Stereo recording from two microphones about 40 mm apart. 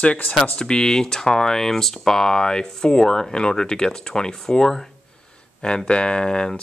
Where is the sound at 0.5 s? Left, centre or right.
Centre.